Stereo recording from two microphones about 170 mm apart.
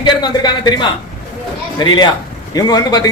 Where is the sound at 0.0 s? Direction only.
25° left (ahead or behind).